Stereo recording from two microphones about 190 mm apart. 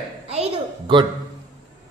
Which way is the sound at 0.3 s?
30° right (ahead or behind).